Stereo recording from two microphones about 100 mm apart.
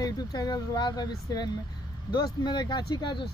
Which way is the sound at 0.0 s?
40° left (ahead or behind).